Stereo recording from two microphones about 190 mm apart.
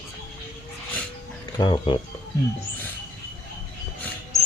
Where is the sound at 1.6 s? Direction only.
25° left (ahead or behind).